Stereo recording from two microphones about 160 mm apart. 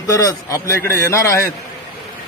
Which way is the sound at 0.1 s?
20° left (ahead or behind).